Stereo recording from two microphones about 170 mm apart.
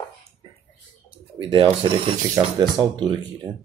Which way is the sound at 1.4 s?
30° right (ahead or behind).